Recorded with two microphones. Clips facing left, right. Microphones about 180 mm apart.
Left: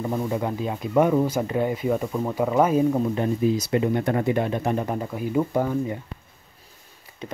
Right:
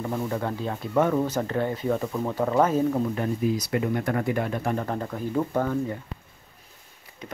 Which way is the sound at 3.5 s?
25° left (ahead or behind).